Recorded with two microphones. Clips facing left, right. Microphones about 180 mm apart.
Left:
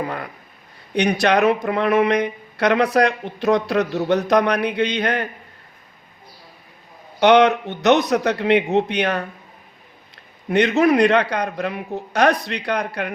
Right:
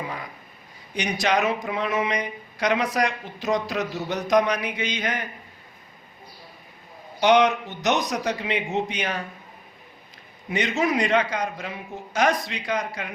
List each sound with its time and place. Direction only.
0.0 s a sound: 65° left (ahead or behind)
0.9 s speech: 65° left (ahead or behind)
7.2 s speech: 60° left (ahead or behind)
10.5 s speech: 65° left (ahead or behind)